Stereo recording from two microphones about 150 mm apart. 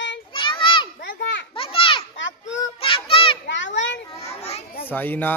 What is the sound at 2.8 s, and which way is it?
Child singing, 35° left (ahead or behind).